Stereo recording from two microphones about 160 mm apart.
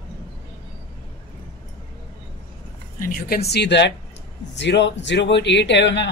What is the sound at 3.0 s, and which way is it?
Speech, 65° left (ahead or behind).